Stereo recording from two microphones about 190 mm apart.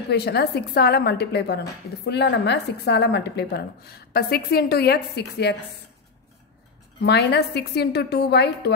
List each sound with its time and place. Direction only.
0.1 s a woman's voice: 60° left (ahead or behind)
7.0 s a woman's voice: 60° left (ahead or behind)